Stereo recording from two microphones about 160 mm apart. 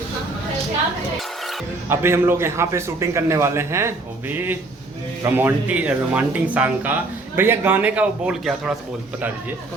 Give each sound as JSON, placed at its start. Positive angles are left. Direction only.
{"t": 1.9, "sound": "speech", "side_deg": -15}